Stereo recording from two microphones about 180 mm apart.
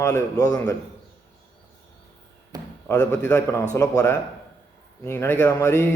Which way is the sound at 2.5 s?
20° right (ahead or behind).